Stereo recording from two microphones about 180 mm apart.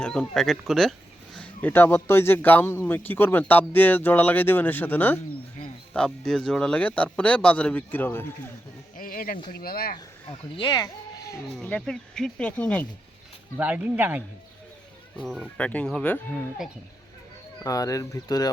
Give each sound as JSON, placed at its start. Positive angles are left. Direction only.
{"t": 0.0, "sound": "speech", "side_deg": 5}
{"t": 9.0, "sound": "speech", "side_deg": 55}
{"t": 10.6, "sound": "speech", "side_deg": 25}
{"t": 11.5, "sound": "speech", "side_deg": 5}
{"t": 13.6, "sound": "speech", "side_deg": -10}
{"t": 17.6, "sound": "speech", "side_deg": 20}